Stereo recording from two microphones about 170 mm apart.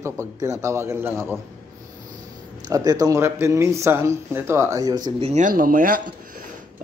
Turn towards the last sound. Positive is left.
turn(degrees=-55)  # may be behind; listen again after turning